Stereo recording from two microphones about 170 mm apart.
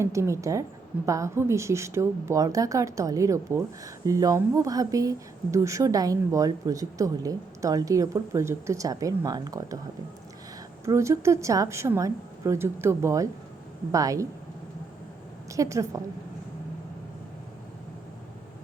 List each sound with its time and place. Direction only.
0.0 s a woman's voice: 15° right (ahead or behind)
10.8 s a woman's voice: 15° right (ahead or behind)
15.5 s a woman's voice: 20° right (ahead or behind)